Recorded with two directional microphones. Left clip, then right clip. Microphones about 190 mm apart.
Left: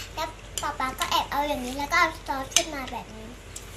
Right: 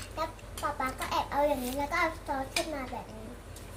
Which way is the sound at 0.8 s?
15° right (ahead or behind).